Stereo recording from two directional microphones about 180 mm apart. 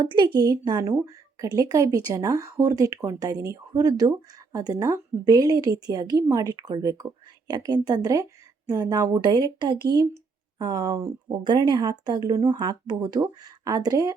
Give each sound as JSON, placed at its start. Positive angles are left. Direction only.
{"t": 0.0, "sound": "a woman's voice", "side_deg": -25}